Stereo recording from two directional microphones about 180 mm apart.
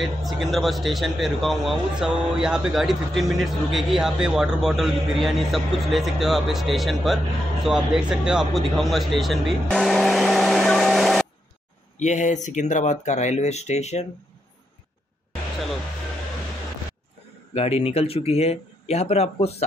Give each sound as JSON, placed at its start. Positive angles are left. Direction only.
{"t": 0.0, "sound": "speech", "side_deg": 0}
{"t": 12.0, "sound": "speech", "side_deg": 40}
{"t": 17.6, "sound": "speech", "side_deg": 35}